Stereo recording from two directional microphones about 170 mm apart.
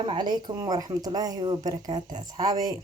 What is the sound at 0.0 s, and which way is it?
Speech, 30° right (ahead or behind).